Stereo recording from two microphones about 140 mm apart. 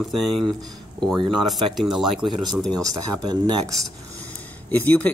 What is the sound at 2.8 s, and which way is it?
Speech, 25° right (ahead or behind).